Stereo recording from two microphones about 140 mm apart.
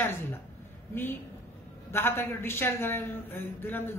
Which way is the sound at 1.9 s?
15° left (ahead or behind).